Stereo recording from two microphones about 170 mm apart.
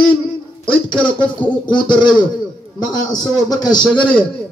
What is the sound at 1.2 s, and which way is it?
A man's voice, 30° left (ahead or behind).